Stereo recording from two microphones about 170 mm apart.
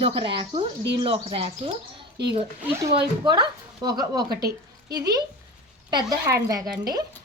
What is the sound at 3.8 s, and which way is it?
Speech, 25° right (ahead or behind).